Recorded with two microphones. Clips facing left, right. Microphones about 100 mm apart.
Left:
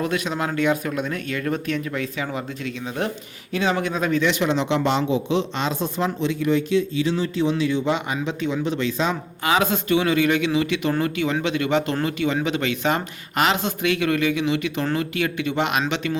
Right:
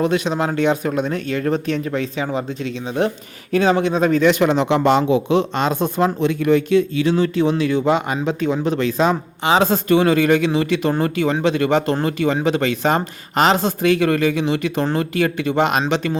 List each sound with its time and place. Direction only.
0.0 s speech: 25° right (ahead or behind)
3.5 s speech: 40° right (ahead or behind)
3.8 s speech: 25° right (ahead or behind)
4.2 s speech: 45° right (ahead or behind)
9.4 s speech: 30° right (ahead or behind)